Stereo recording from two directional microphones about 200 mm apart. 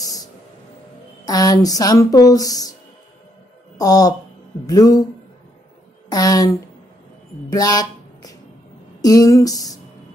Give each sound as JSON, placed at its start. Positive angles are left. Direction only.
{"t": 1.2, "sound": "speech", "side_deg": 20}
{"t": 3.7, "sound": "speech", "side_deg": 20}
{"t": 6.0, "sound": "a woman's voice", "side_deg": 20}
{"t": 7.5, "sound": "a sound", "side_deg": 20}
{"t": 9.0, "sound": "speech", "side_deg": 15}